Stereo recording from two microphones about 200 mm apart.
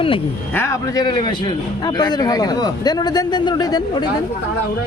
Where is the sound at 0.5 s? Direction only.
15° left (ahead or behind).